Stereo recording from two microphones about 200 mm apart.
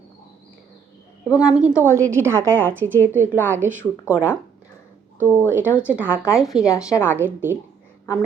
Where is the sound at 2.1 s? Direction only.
10° right (ahead or behind).